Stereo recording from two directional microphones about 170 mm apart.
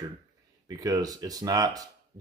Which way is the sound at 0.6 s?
20° right (ahead or behind).